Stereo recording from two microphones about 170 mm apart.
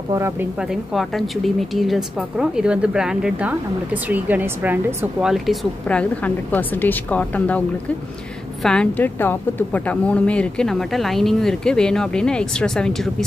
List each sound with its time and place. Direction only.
0.1 s a woman's voice: 15° right (ahead or behind)
0.6 s a woman's voice: centre (ahead or behind)
8.6 s a woman's voice: 5° left (ahead or behind)